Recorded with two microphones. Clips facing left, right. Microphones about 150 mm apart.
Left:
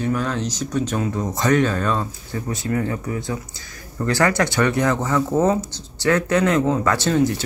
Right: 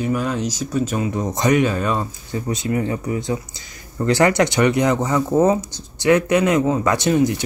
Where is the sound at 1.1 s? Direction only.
20° right (ahead or behind).